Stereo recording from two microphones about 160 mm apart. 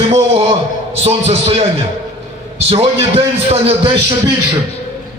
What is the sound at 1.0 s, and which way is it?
Speech, 40° right (ahead or behind).